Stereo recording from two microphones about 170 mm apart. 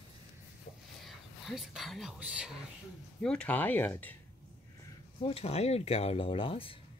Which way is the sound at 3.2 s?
10° left (ahead or behind).